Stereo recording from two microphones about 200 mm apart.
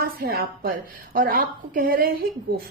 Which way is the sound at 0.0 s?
50° right (ahead or behind).